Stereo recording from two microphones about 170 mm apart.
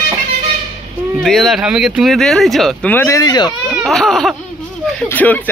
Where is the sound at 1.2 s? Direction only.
Centre (ahead or behind).